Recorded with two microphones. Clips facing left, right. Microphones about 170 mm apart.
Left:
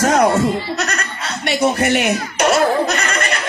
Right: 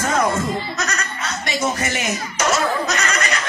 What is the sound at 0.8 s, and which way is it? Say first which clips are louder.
Speech: left 2 dB; 65° left (ahead or behind).